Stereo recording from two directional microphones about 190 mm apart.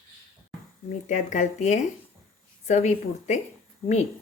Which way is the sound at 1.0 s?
40° left (ahead or behind).